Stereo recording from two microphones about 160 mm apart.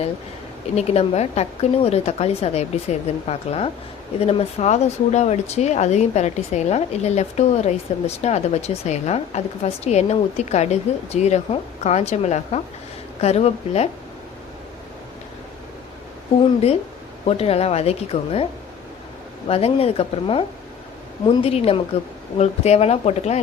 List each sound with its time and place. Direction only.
0.8 s a woman's voice: 40° left (ahead or behind)
17.2 s a woman's voice: 40° left (ahead or behind)
19.5 s a woman's voice: 40° left (ahead or behind)